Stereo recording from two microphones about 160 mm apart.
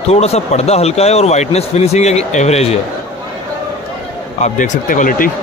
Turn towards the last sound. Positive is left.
turn(degrees=55)  # may be behind; listen again after turning